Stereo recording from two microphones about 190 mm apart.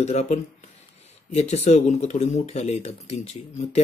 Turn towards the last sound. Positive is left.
turn(degrees=35)  # may be behind; listen again after turning